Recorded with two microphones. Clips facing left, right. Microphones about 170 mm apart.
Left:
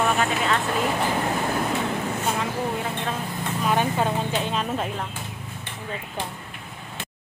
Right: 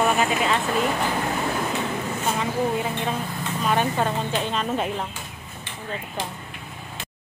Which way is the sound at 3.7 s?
5° left (ahead or behind).